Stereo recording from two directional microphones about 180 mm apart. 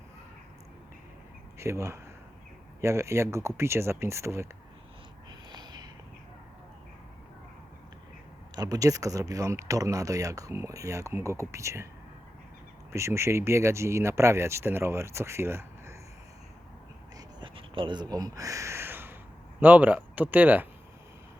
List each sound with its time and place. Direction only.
1.5 s speech: 15° right (ahead or behind)
5.5 s a sound: 25° right (ahead or behind)
8.5 s speech: 20° right (ahead or behind)
12.9 s speech: 15° right (ahead or behind)
17.2 s a sound: 25° right (ahead or behind)
19.5 s speech: 10° right (ahead or behind)